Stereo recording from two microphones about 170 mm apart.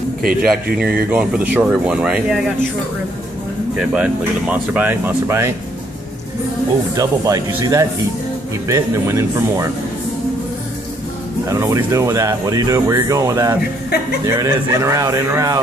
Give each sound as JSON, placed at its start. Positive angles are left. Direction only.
{"t": 0.2, "sound": "speech", "side_deg": -60}
{"t": 1.1, "sound": "speech", "side_deg": -10}
{"t": 3.7, "sound": "speech", "side_deg": -5}
{"t": 7.0, "sound": "speech", "side_deg": -20}
{"t": 11.4, "sound": "speech", "side_deg": -20}